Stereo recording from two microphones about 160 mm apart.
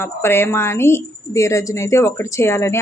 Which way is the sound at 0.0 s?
15° left (ahead or behind).